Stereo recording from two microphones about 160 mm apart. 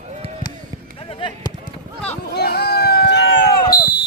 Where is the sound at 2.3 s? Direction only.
80° left.